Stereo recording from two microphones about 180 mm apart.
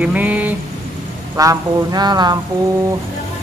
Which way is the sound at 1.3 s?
20° right (ahead or behind).